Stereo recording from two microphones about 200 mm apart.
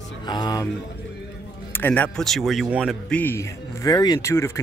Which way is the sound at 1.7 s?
10° left (ahead or behind).